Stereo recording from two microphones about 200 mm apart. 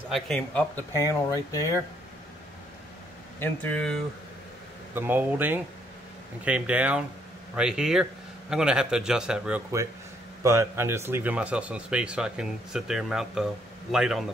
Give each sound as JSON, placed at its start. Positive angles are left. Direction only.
{"t": 0.1, "sound": "speech", "side_deg": 5}
{"t": 0.9, "sound": "speech", "side_deg": 15}
{"t": 3.3, "sound": "speech", "side_deg": 10}
{"t": 4.9, "sound": "speech", "side_deg": -10}
{"t": 10.4, "sound": "speech", "side_deg": -15}